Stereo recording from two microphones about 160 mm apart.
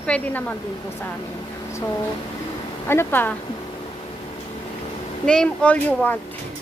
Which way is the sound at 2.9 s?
15° left (ahead or behind).